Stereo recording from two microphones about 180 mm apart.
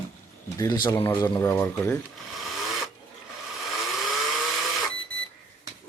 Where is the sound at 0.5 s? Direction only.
20° left (ahead or behind).